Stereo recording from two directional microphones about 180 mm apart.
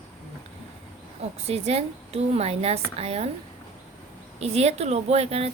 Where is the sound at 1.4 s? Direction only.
35° right (ahead or behind).